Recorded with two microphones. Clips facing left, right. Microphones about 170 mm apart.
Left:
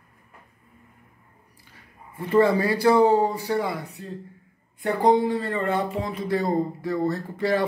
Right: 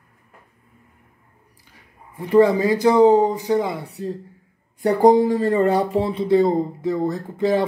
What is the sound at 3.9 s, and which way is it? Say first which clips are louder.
Speech: right 8 dB; 35° right (ahead or behind).